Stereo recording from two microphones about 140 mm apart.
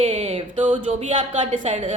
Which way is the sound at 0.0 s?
50° right (ahead or behind).